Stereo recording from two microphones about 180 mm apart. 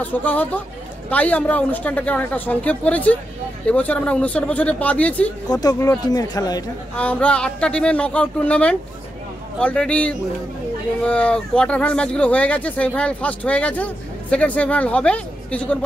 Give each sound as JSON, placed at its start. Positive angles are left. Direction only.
{"t": 0.0, "sound": "speech", "side_deg": 10}
{"t": 5.5, "sound": "speech", "side_deg": 20}
{"t": 7.0, "sound": "speech", "side_deg": 5}